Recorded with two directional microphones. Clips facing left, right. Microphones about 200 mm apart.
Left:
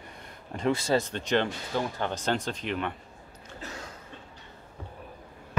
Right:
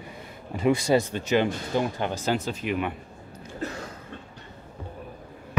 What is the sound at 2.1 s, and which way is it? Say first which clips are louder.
A man's voice: right 3 dB; 5° right (ahead or behind).